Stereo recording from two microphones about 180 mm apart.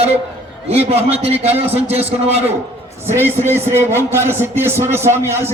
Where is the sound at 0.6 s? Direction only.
35° right (ahead or behind).